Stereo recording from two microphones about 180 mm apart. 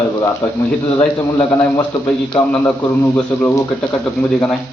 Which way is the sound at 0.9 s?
20° left (ahead or behind).